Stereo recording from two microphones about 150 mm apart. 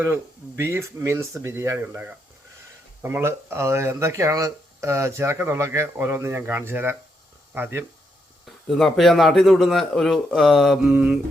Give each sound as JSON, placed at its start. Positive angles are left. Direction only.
{"t": 0.0, "sound": "speech", "side_deg": -15}
{"t": 8.7, "sound": "a man's voice", "side_deg": 0}